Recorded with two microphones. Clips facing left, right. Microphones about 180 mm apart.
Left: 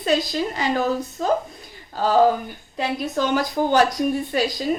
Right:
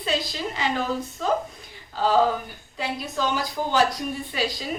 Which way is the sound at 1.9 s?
45° left (ahead or behind).